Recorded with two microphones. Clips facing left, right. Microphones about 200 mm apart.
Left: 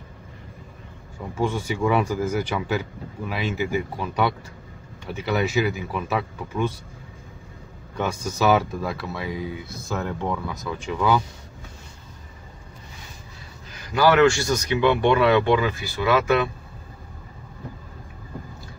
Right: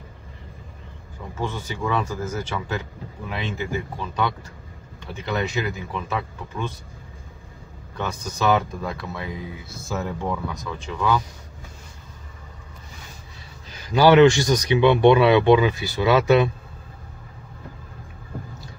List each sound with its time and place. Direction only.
1.4 s speech: 10° left (ahead or behind)
8.0 s speech: 10° left (ahead or behind)
13.9 s speech: 20° right (ahead or behind)